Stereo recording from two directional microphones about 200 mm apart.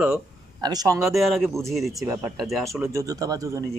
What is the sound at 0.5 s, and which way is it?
Speech, 20° right (ahead or behind).